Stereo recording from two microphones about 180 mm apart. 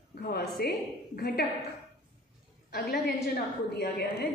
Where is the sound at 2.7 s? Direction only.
60° left (ahead or behind).